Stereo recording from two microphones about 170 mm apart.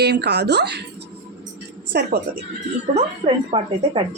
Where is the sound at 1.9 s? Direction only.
70° right (ahead or behind).